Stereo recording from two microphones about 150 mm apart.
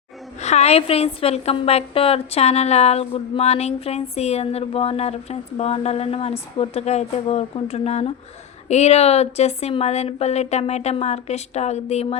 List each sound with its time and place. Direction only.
0.4 s a woman's voice: 45° left (ahead or behind)